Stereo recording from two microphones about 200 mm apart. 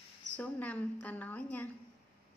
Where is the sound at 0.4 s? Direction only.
5° left (ahead or behind).